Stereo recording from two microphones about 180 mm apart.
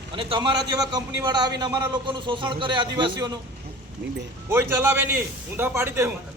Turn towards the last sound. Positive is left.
turn(degrees=-15)  # may be behind; listen again after turning